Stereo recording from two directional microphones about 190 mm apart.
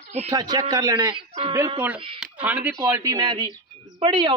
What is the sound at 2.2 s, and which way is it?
Speech, 5° right (ahead or behind).